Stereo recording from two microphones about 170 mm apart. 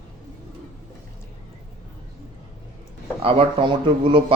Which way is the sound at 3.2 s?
30° right (ahead or behind).